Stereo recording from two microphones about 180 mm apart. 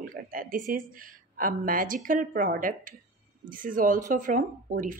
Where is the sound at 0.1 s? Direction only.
50° right (ahead or behind).